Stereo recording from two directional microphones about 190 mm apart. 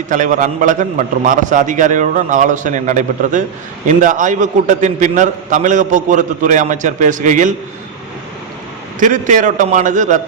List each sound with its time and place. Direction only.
0.1 s a man's voice: 45° right (ahead or behind)
9.0 s a man's voice: 45° right (ahead or behind)